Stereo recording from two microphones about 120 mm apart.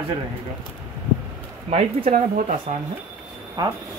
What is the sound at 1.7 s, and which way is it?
Speech, 65° right (ahead or behind).